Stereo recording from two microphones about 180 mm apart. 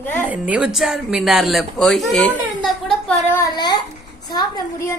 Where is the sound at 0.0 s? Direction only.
10° left (ahead or behind).